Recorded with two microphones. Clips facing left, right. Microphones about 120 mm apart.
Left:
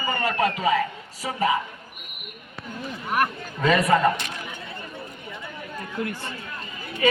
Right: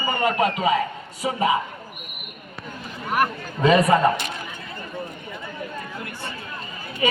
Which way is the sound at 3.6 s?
25° right (ahead or behind).